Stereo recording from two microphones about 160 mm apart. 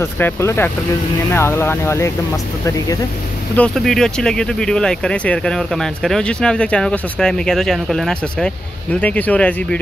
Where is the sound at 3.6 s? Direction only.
Centre (ahead or behind).